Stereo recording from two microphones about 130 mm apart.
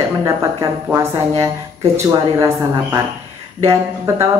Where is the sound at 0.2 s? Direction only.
25° right (ahead or behind).